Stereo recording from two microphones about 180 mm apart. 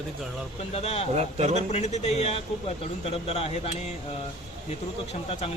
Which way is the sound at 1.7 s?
40° left (ahead or behind).